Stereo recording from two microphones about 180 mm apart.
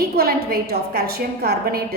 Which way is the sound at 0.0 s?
60° right (ahead or behind).